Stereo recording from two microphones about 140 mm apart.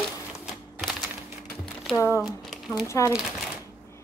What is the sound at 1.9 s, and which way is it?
Speech, 20° left (ahead or behind).